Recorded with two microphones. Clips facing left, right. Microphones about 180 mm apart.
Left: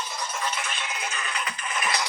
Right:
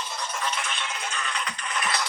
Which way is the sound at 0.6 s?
5° left (ahead or behind).